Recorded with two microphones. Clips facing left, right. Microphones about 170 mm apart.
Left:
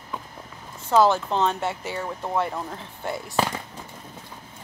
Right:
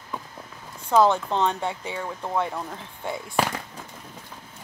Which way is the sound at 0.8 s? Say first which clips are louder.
Even; centre (ahead or behind).